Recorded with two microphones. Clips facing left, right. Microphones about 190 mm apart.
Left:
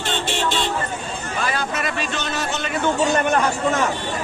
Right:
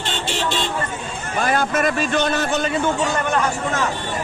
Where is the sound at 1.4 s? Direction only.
50° right (ahead or behind).